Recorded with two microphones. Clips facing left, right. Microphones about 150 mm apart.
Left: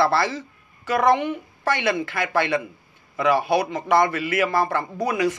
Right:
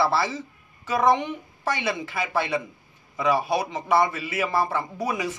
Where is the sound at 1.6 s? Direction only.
75° left (ahead or behind).